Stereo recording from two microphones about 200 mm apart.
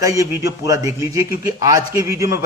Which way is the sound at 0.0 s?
15° right (ahead or behind).